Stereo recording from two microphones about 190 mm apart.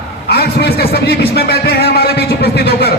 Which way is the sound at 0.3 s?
60° left (ahead or behind).